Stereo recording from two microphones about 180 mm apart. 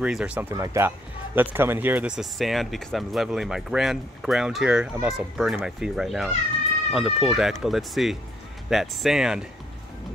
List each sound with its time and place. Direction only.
0.0 s speech: 5° right (ahead or behind)